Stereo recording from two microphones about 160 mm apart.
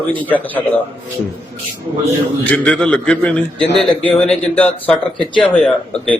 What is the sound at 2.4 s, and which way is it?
A man's voice, 10° left (ahead or behind).